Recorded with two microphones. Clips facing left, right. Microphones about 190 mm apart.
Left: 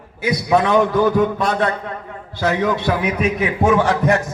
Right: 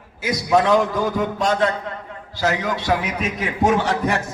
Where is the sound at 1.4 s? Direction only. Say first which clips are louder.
Even; 55° left (ahead or behind).